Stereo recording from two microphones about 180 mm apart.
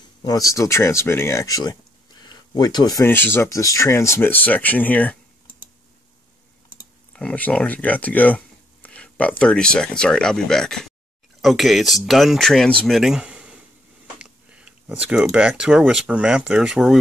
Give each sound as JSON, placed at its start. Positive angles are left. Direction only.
{"t": 0.2, "sound": "speech", "side_deg": 20}
{"t": 7.1, "sound": "speech", "side_deg": 5}